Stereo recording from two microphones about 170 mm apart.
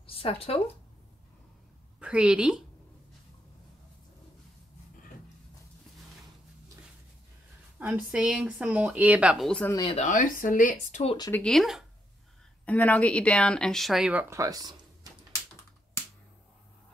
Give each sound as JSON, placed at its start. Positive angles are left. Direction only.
{"t": 0.0, "sound": "speech", "side_deg": 35}
{"t": 2.0, "sound": "a woman's voice", "side_deg": -5}
{"t": 7.8, "sound": "speech", "side_deg": -5}
{"t": 9.5, "sound": "speech", "side_deg": 10}
{"t": 9.9, "sound": "speech", "side_deg": 50}
{"t": 11.1, "sound": "speech", "side_deg": 20}
{"t": 11.4, "sound": "speech", "side_deg": 0}
{"t": 14.3, "sound": "speech", "side_deg": -20}